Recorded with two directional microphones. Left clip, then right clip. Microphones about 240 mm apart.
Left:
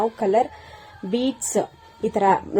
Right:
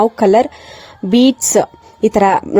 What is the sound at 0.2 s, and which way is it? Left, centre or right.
A woman's voice, right.